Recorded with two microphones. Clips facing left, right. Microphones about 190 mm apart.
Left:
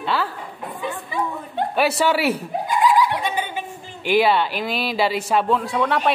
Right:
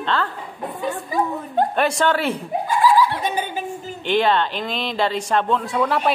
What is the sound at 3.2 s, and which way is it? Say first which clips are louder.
Dog: right 1 dB; 40° right (ahead or behind).